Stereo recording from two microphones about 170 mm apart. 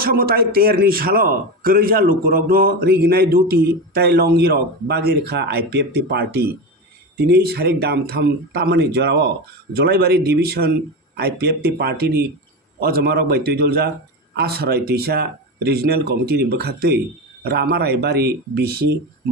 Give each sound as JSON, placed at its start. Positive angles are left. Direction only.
{"t": 0.0, "sound": "a man's voice", "side_deg": -60}